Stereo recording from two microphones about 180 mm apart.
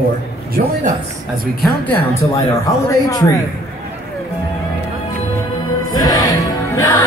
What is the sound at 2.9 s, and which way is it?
Speech, 20° left (ahead or behind).